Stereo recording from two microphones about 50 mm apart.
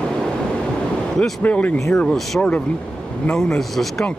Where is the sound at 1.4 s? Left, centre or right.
Left.